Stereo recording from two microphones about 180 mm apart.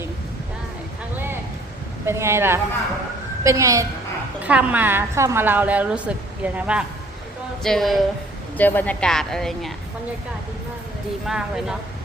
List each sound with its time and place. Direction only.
2.0 s a woman's voice: 15° right (ahead or behind); by 9.7 s centre (ahead or behind)
11.3 s speech: 5° right (ahead or behind)